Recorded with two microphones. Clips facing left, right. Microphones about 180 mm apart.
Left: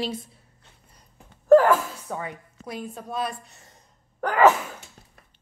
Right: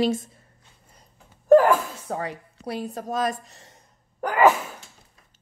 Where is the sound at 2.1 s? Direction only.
40° right (ahead or behind).